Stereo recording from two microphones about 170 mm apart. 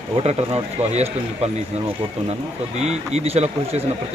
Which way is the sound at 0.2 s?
35° right (ahead or behind).